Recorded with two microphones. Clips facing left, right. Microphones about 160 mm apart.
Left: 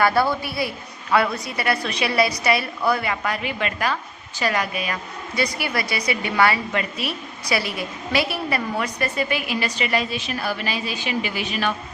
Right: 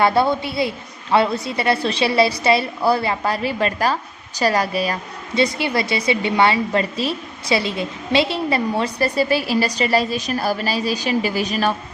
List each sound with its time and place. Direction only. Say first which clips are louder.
0.0 s a woman's voice: right 3 dB; 25° right (ahead or behind)